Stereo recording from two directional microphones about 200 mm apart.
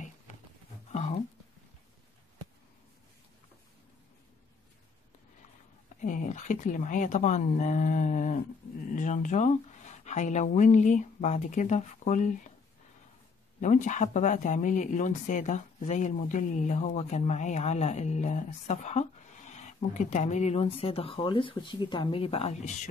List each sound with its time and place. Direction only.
0.9 s speech: 35° left (ahead or behind)
5.9 s speech: 40° left (ahead or behind)
13.6 s speech: 40° left (ahead or behind)